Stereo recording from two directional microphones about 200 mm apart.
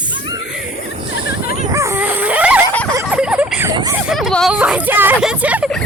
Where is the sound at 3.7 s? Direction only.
20° right (ahead or behind).